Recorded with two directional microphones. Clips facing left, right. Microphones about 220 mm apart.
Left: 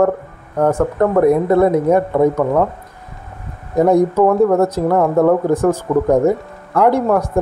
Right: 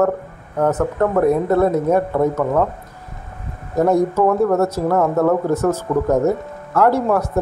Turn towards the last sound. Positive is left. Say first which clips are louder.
# left 2 dB
turn(degrees=15)  # may be behind; listen again after turning